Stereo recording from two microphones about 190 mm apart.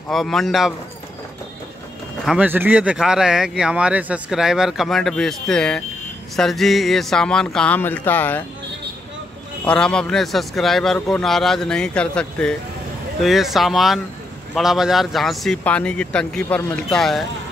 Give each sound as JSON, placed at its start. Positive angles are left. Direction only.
{"t": 0.1, "sound": "speech", "side_deg": 0}
{"t": 2.2, "sound": "speech", "side_deg": -5}
{"t": 9.7, "sound": "speech", "side_deg": 5}